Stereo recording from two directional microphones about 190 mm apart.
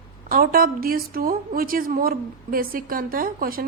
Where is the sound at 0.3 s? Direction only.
50° right (ahead or behind).